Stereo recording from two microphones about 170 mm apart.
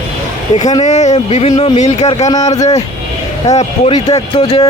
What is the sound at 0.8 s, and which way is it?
Speech, 45° left (ahead or behind).